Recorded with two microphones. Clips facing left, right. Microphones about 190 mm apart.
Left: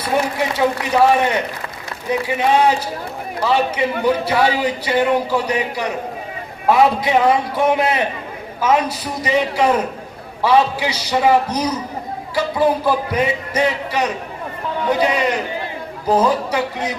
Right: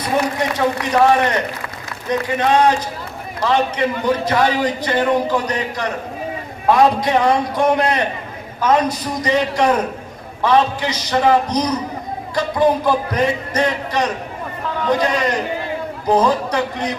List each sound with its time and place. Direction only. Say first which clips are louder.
0.0 s a man's voice: even; 5° left (ahead or behind)